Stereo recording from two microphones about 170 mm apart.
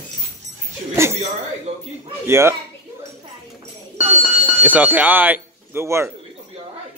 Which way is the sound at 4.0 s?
50° left (ahead or behind).